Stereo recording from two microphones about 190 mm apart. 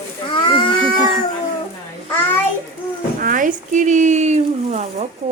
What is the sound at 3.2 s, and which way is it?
Speech, 45° right (ahead or behind).